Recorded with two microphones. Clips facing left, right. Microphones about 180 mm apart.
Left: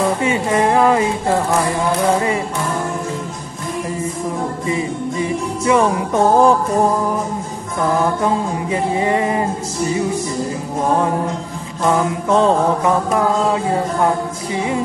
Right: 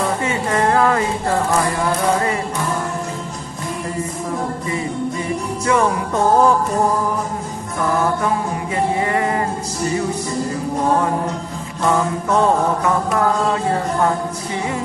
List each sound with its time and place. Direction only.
0.2 s music: 15° left (ahead or behind)
5.7 s music: 20° left (ahead or behind)
7.9 s music: 20° left (ahead or behind)
11.9 s music: 20° left (ahead or behind)